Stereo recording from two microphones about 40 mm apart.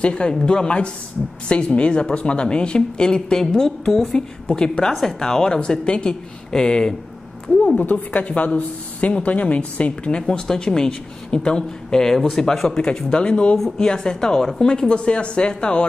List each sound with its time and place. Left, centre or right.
0.0 s a woman's voice: left; by 4.2 s centre
4.5 s speech: left
5.0 s speech: centre
7.6 s a woman's voice: left
10.0 s speech: left